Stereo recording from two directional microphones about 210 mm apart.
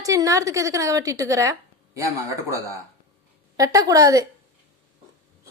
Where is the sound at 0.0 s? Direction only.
15° right (ahead or behind).